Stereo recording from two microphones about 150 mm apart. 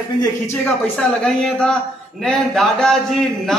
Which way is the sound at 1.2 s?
5° left (ahead or behind).